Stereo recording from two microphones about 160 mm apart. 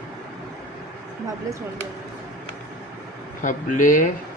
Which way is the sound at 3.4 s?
55° left (ahead or behind).